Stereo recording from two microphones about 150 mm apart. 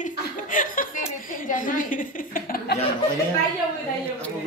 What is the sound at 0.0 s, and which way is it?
Chuckle, 60° left (ahead or behind).